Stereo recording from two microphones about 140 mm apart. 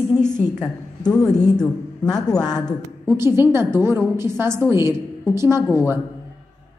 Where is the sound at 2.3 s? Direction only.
30° left (ahead or behind).